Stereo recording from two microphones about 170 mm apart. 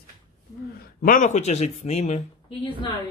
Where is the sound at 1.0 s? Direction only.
50° left (ahead or behind).